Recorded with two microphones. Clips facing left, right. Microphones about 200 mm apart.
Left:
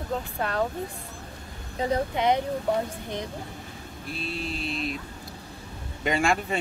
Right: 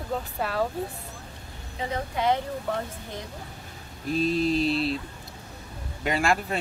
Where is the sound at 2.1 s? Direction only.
20° left (ahead or behind).